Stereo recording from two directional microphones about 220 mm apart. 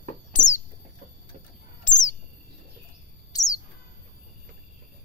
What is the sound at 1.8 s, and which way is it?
Bird, 35° left (ahead or behind).